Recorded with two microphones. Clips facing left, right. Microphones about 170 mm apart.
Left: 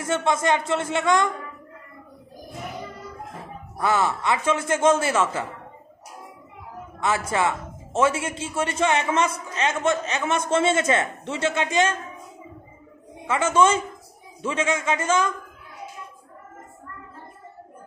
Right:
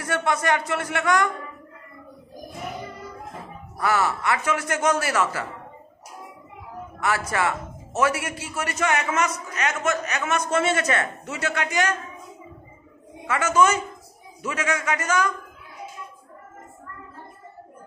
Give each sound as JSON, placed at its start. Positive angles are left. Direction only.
{"t": 0.0, "sound": "a man's voice", "side_deg": 20}
{"t": 3.7, "sound": "a man's voice", "side_deg": 25}
{"t": 7.0, "sound": "a man's voice", "side_deg": 25}
{"t": 13.3, "sound": "a man's voice", "side_deg": 25}